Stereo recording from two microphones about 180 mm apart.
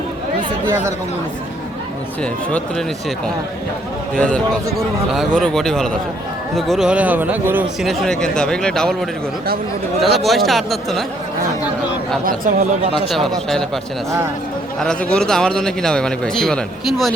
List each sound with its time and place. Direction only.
4.1 s a man's voice: 5° left (ahead or behind); by 7.9 s 10° right (ahead or behind)
7.9 s a man's voice: 5° left (ahead or behind)
12.2 s speech: 50° right (ahead or behind)
13.1 s a man's voice: centre (ahead or behind)
14.8 s a man's voice: 5° left (ahead or behind)